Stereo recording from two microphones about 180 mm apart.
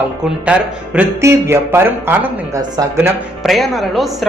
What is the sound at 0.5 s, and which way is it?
A man's voice, 5° right (ahead or behind).